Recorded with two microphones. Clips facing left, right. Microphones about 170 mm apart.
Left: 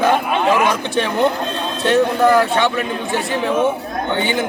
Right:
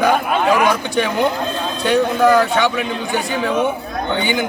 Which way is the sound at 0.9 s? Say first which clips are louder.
Even; centre (ahead or behind).